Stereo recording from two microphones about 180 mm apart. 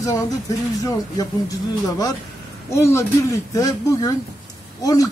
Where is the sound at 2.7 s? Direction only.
15° left (ahead or behind).